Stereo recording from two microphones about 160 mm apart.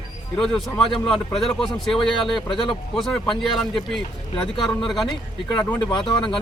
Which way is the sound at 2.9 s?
Centre (ahead or behind).